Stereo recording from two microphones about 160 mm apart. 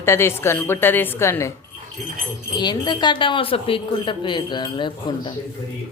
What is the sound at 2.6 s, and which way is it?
A woman's voice, 25° left (ahead or behind).